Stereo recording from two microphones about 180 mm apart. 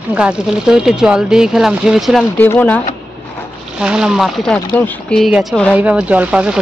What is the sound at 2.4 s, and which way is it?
Speech, 10° left (ahead or behind).